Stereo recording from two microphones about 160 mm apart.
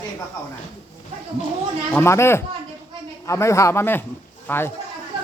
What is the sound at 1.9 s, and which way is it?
Speech, 15° left (ahead or behind).